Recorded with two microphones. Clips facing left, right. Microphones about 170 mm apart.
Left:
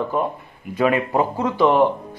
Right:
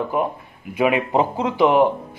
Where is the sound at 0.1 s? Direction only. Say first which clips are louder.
Even; 10° right (ahead or behind).